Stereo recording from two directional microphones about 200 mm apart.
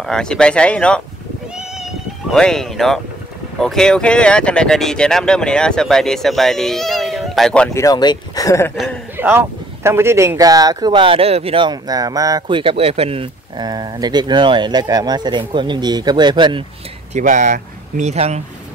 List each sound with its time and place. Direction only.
0.0 s speech: 5° left (ahead or behind)
2.3 s speech: centre (ahead or behind)
7.8 s speech: 20° left (ahead or behind)
8.7 s a man's voice: 5° right (ahead or behind); by 16.6 s 25° right (ahead or behind)
17.1 s speech: 40° right (ahead or behind)